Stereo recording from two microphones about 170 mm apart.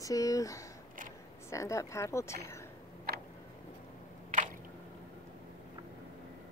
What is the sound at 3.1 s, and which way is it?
Tick, 65° right (ahead or behind).